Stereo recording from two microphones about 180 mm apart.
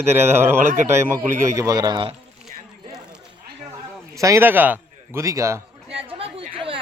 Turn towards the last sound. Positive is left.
turn(degrees=-30)  # may be behind; listen again after turning